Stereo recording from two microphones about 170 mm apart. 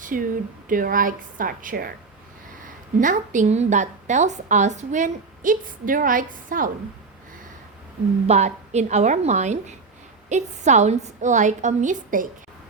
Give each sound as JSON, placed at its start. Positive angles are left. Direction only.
{"t": 0.0, "sound": "a woman's voice", "side_deg": -55}
{"t": 3.0, "sound": "a woman's voice", "side_deg": -50}
{"t": 8.3, "sound": "a woman's voice", "side_deg": -40}